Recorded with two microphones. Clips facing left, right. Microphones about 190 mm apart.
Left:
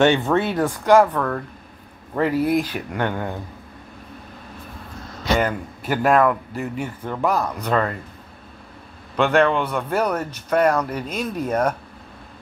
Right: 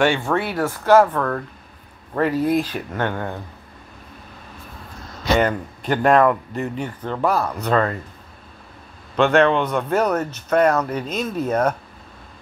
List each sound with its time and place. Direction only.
0.0 s speech: 20° left (ahead or behind)
5.4 s speech: 5° left (ahead or behind)
9.1 s speech: 10° left (ahead or behind)